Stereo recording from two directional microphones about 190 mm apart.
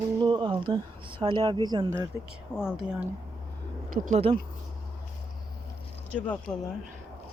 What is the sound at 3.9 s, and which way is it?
Speech, 35° right (ahead or behind).